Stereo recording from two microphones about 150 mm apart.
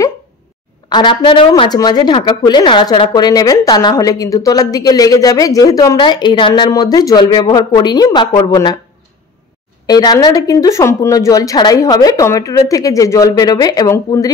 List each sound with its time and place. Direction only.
0.8 s a woman's voice: 30° left (ahead or behind)
9.8 s a woman's voice: 25° left (ahead or behind)